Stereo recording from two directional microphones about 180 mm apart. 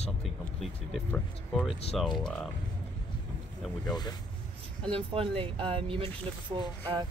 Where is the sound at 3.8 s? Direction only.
25° left (ahead or behind).